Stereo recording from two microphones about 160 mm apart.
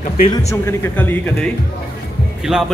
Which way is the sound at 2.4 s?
5° right (ahead or behind).